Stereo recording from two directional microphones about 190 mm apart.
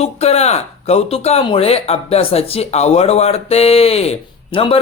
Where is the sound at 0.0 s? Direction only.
35° left (ahead or behind).